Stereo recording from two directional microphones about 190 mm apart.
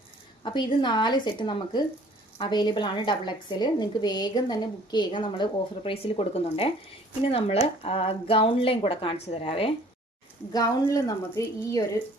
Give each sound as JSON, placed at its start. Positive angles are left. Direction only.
{"t": 0.4, "sound": "a woman's voice", "side_deg": 25}
{"t": 10.5, "sound": "a woman's voice", "side_deg": 15}